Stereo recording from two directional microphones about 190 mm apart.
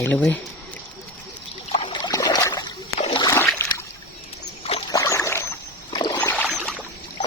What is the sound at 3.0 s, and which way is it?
Splash, 25° left (ahead or behind).